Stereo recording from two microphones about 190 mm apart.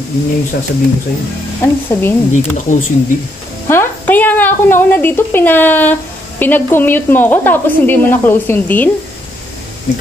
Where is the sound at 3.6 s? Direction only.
15° left (ahead or behind).